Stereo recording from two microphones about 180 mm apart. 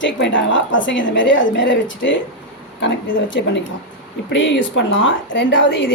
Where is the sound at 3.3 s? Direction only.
90° left.